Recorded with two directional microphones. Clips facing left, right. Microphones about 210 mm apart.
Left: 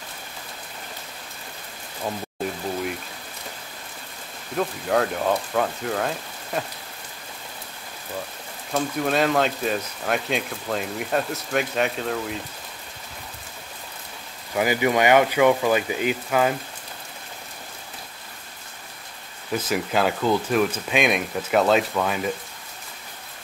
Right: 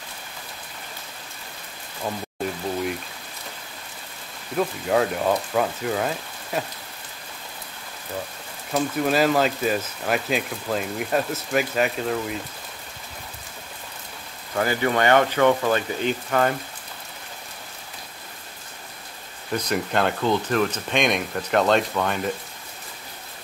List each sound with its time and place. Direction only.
4.6 s speech: centre (ahead or behind)
8.7 s speech: centre (ahead or behind)
14.5 s speech: 10° left (ahead or behind)
19.5 s speech: 5° left (ahead or behind)